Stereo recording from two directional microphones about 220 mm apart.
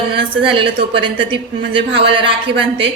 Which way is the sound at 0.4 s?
25° right (ahead or behind).